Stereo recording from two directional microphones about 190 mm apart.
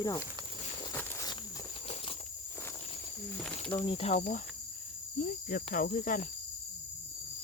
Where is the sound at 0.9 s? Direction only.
10° left (ahead or behind); by 2.2 s 30° left (ahead or behind).